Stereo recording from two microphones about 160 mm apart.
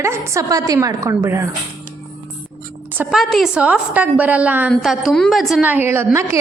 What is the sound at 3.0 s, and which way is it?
A woman's voice, centre (ahead or behind).